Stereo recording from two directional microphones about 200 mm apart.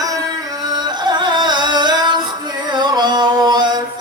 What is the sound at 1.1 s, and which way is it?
Music, 20° right (ahead or behind).